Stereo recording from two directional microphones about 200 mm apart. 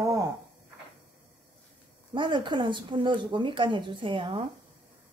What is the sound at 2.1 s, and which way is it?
Speech, 25° right (ahead or behind).